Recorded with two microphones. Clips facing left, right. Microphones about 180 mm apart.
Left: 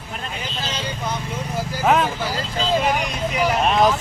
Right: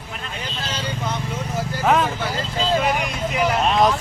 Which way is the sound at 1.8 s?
Centre (ahead or behind).